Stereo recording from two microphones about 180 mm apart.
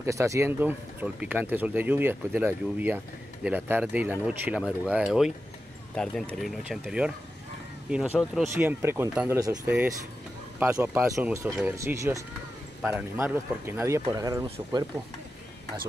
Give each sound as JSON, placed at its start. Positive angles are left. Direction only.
{"t": 0.0, "sound": "speech", "side_deg": -15}